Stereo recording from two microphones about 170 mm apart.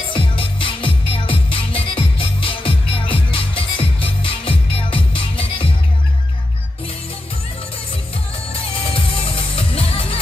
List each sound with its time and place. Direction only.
0.1 s music: 30° left (ahead or behind)
8.9 s music: 30° left (ahead or behind)